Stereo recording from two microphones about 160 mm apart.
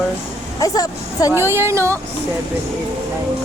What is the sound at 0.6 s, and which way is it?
Speech, 20° left (ahead or behind).